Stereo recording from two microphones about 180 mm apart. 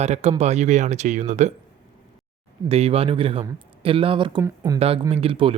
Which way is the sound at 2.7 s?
35° right (ahead or behind).